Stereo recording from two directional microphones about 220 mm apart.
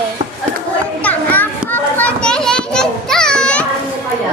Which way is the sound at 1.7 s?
5° left (ahead or behind).